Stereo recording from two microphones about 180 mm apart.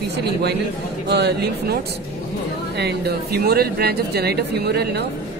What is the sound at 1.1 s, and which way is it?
Speech, 65° right (ahead or behind).